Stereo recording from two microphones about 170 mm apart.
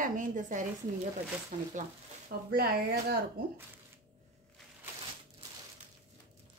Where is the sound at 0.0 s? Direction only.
50° right (ahead or behind).